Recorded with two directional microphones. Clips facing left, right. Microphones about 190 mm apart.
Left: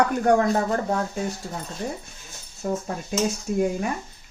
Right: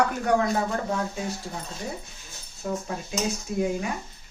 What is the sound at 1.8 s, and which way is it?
Speech, 60° left (ahead or behind).